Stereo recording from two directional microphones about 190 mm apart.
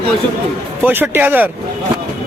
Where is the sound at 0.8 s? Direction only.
10° right (ahead or behind).